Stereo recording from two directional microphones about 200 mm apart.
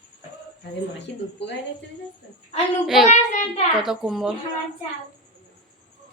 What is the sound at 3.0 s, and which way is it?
Speech, 35° left (ahead or behind).